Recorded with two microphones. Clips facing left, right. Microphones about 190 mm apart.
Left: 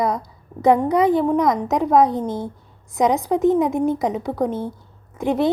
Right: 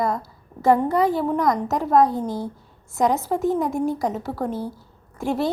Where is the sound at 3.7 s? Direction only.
20° left (ahead or behind).